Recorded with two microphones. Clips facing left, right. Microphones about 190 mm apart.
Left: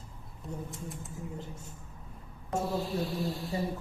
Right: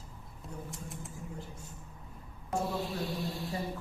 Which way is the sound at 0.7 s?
Centre (ahead or behind).